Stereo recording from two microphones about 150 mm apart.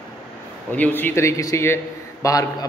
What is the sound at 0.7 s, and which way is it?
A man's voice, 10° left (ahead or behind).